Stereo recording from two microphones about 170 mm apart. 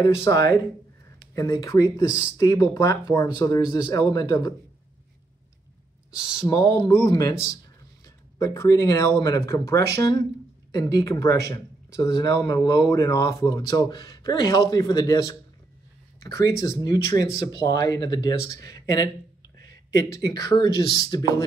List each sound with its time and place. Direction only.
0.2 s speech: 20° left (ahead or behind)
6.4 s speech: 20° left (ahead or behind)
20.4 s speech: 25° left (ahead or behind)